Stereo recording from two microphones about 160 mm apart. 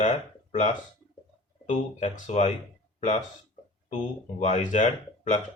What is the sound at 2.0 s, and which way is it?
Speech, 45° left (ahead or behind).